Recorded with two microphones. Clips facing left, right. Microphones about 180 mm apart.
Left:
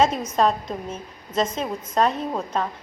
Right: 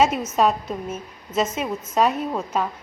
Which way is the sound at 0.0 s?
10° right (ahead or behind).